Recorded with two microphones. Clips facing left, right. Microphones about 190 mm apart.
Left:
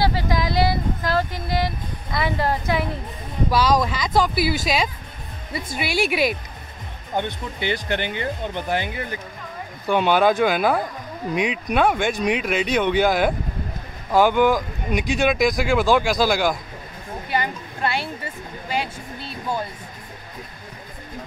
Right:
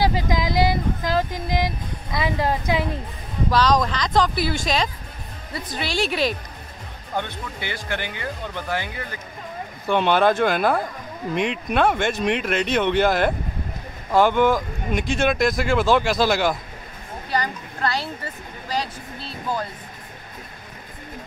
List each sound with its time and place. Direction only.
0.0 s vehicle: 15° right (ahead or behind)
2.1 s speech: 15° right (ahead or behind)
3.4 s speech: 10° left (ahead or behind)
9.8 s speech: 5° left (ahead or behind)